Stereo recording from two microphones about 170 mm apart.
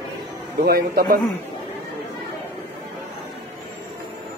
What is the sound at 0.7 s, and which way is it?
Speech, 65° right (ahead or behind).